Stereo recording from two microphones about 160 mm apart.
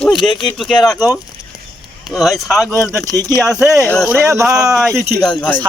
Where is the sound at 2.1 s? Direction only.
Centre (ahead or behind).